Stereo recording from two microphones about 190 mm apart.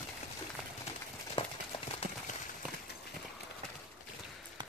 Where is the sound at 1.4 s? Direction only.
30° left (ahead or behind).